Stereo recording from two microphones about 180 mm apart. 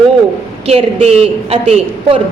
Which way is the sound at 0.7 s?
35° right (ahead or behind).